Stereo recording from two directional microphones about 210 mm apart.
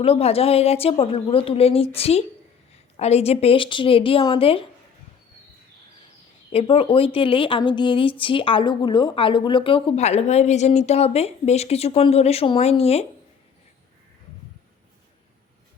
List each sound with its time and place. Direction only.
0.0 s a woman's voice: 30° left (ahead or behind)
6.5 s a woman's voice: 25° left (ahead or behind)